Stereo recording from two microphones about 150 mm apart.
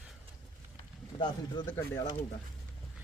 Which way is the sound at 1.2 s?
30° left (ahead or behind).